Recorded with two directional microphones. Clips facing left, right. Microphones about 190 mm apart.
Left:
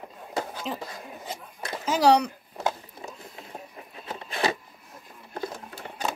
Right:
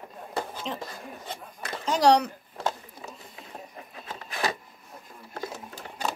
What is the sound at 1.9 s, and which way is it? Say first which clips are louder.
Speech: left 1 dB; centre (ahead or behind).